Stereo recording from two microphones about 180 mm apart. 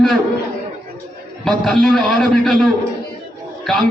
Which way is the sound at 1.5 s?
Centre (ahead or behind).